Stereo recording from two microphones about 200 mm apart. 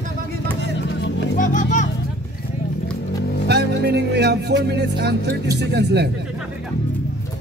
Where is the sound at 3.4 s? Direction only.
55° right (ahead or behind).